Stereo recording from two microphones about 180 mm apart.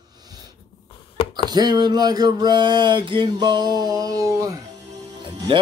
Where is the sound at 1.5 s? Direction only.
25° right (ahead or behind).